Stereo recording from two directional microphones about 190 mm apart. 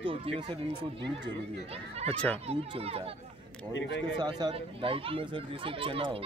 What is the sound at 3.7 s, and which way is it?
Speech, 75° left (ahead or behind).